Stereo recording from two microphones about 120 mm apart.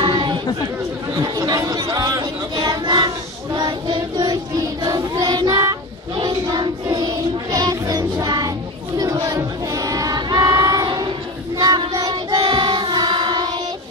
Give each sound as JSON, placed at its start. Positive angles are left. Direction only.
{"t": 0.0, "sound": "chatter", "side_deg": -45}
{"t": 1.1, "sound": "chatter", "side_deg": -30}
{"t": 2.5, "sound": "a sound", "side_deg": -35}
{"t": 3.5, "sound": "child singing", "side_deg": -40}